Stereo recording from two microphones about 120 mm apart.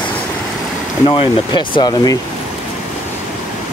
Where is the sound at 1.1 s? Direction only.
45° left (ahead or behind).